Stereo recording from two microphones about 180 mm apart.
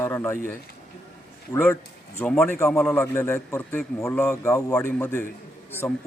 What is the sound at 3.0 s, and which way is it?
A man's voice, 15° left (ahead or behind).